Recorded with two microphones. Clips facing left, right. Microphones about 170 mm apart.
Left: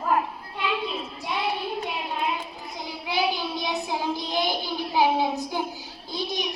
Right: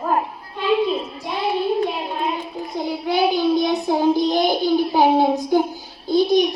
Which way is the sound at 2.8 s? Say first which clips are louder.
Right 8 dB; 50° right (ahead or behind).